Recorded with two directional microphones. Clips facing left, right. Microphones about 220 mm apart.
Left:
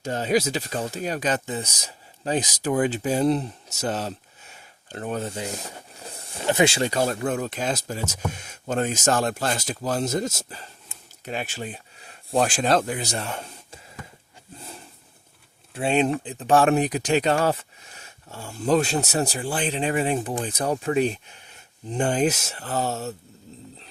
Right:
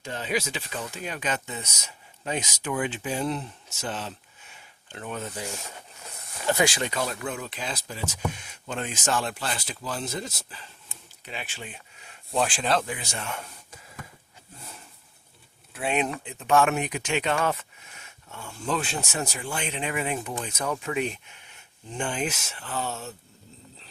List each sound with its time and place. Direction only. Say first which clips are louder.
0.0 s speech: left 7 dB; 40° left (ahead or behind)
15.7 s speech: left 6 dB; 30° left (ahead or behind)